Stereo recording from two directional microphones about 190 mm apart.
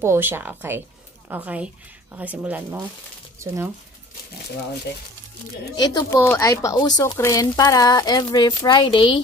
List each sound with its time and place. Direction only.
0.0 s a woman's voice: 10° right (ahead or behind)
5.8 s speech: 20° left (ahead or behind)